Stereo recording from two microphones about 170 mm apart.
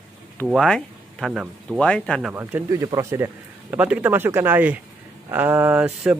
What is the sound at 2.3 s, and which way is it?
Speech, 15° right (ahead or behind).